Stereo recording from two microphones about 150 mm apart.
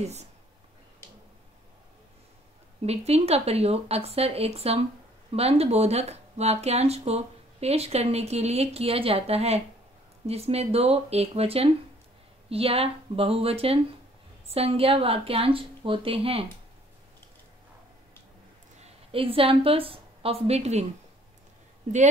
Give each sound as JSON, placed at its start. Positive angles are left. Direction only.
{"t": 2.8, "sound": "a woman's voice", "side_deg": -45}
{"t": 18.8, "sound": "speech", "side_deg": -40}